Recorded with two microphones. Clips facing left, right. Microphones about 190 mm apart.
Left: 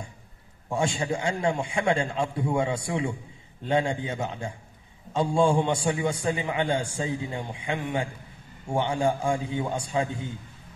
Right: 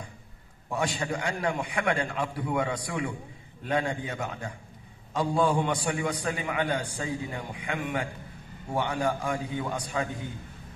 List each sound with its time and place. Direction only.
0.7 s a man's voice: 25° left (ahead or behind)